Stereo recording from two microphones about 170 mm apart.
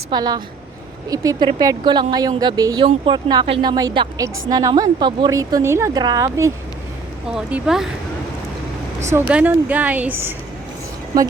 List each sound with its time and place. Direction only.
0.1 s a woman's voice: 25° right (ahead or behind)
7.3 s speech: 5° right (ahead or behind)
9.1 s speech: 10° right (ahead or behind)